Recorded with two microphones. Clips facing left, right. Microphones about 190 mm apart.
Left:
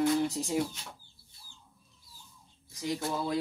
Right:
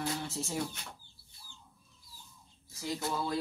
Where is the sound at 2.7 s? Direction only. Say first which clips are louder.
Left 3 dB; 15° left (ahead or behind).